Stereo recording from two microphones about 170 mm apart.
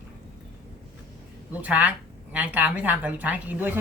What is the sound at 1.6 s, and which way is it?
A woman's voice, 10° right (ahead or behind).